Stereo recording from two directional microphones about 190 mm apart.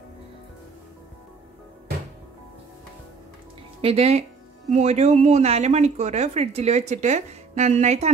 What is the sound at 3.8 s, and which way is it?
Speech, 30° right (ahead or behind).